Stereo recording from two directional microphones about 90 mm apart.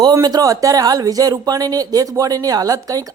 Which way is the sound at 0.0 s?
45° right (ahead or behind).